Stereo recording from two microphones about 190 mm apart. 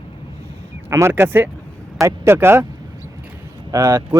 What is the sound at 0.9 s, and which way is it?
Speech, 15° right (ahead or behind).